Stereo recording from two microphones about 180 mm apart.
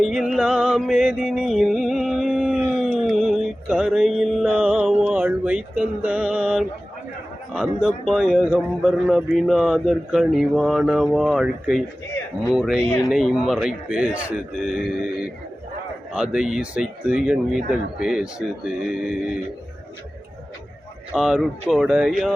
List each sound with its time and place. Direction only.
0.0 s music: centre (ahead or behind)
2.7 s a sound: centre (ahead or behind)
7.5 s a man's voice: 5° right (ahead or behind)
21.1 s a man's voice: centre (ahead or behind)